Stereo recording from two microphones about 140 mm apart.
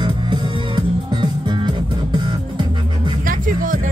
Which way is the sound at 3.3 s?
75° right (ahead or behind).